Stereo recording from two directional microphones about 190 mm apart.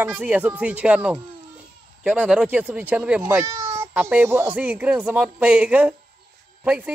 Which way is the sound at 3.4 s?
20° right (ahead or behind).